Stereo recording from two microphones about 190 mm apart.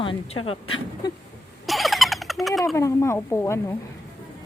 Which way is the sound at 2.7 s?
15° left (ahead or behind).